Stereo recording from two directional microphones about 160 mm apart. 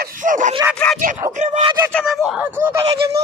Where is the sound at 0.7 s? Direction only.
5° left (ahead or behind).